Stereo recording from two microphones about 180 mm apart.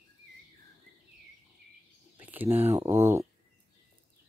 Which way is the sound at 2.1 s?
10° right (ahead or behind).